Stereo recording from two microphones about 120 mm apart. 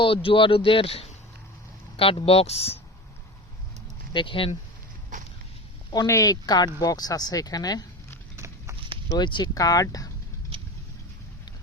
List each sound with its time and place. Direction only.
0.0 s speech: 50° left (ahead or behind)
4.1 s speech: 45° left (ahead or behind)
5.9 s speech: 30° left (ahead or behind)
9.0 s speech: 35° left (ahead or behind)